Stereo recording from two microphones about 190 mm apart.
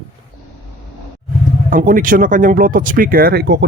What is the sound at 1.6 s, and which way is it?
Speech, 45° right (ahead or behind).